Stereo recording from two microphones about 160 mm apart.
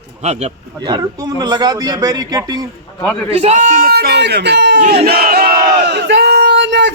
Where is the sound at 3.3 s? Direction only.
45° right (ahead or behind); by 4.7 s 90° right.